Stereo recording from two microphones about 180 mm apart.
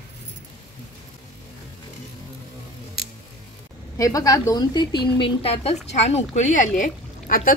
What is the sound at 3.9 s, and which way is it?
A woman's voice, 20° left (ahead or behind).